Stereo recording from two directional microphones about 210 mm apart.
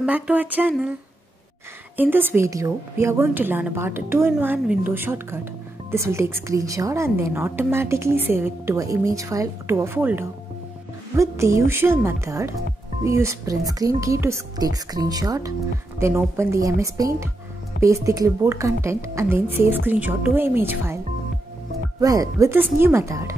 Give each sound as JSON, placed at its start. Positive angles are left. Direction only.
{"t": 0.0, "sound": "a woman's voice", "side_deg": -10}
{"t": 2.0, "sound": "a woman's voice", "side_deg": -10}
{"t": 22.0, "sound": "a woman's voice", "side_deg": -15}